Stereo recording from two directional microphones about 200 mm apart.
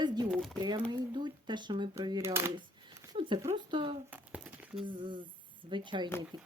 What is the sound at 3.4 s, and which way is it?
Speech, 25° right (ahead or behind).